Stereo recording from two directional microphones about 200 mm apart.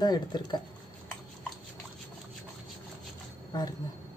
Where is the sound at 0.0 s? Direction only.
20° left (ahead or behind).